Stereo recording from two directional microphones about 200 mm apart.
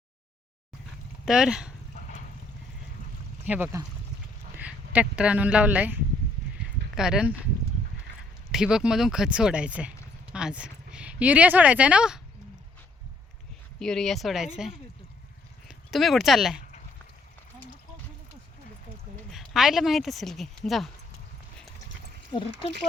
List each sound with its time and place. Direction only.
1.2 s speech: 5° right (ahead or behind)
3.4 s speech: 10° right (ahead or behind)
8.5 s speech: 5° right (ahead or behind)
13.7 s speech: centre (ahead or behind)
19.3 s speech: centre (ahead or behind)
22.3 s speech: 20° left (ahead or behind)